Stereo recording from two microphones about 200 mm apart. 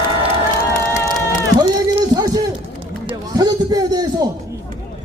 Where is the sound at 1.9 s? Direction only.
20° right (ahead or behind).